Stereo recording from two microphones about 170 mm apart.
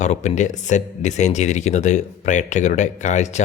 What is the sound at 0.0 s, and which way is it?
A man's voice, 45° left (ahead or behind).